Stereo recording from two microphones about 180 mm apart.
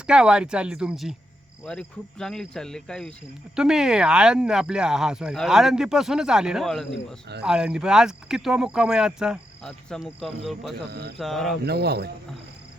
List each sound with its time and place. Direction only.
0.1 s speech: 5° right (ahead or behind)
10.8 s speech: 65° right (ahead or behind)
11.2 s speech: centre (ahead or behind)
11.6 s speech: 65° right (ahead or behind)